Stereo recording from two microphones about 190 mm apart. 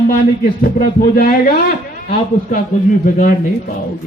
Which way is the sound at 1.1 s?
45° left (ahead or behind).